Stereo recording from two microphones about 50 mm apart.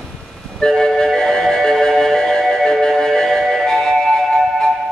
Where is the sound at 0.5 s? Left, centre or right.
Centre.